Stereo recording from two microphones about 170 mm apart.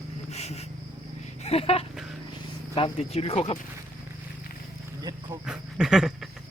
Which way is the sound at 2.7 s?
35° left (ahead or behind).